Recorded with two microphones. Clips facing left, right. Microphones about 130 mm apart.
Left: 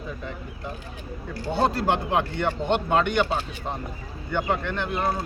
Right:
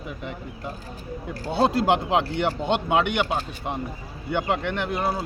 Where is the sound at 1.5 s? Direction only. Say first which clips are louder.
Right 3 dB; 15° right (ahead or behind).